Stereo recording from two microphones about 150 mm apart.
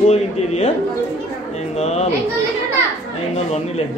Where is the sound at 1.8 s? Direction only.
45° left (ahead or behind).